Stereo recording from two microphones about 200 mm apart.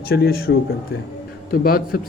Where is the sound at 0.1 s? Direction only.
50° left (ahead or behind).